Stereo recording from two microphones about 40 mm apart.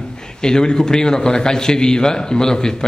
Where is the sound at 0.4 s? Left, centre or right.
Centre.